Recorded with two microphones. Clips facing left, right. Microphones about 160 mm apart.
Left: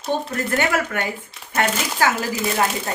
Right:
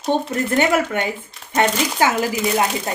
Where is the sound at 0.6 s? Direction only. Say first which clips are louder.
Right 5 dB; 20° right (ahead or behind).